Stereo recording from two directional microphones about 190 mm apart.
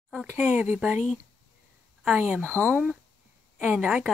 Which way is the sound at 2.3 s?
5° left (ahead or behind).